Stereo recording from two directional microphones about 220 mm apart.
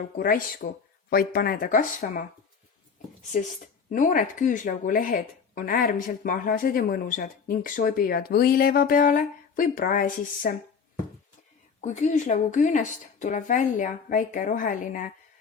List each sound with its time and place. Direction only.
0.2 s speech: 40° left (ahead or behind)
3.8 s speech: 35° left (ahead or behind)
11.8 s speech: 35° left (ahead or behind)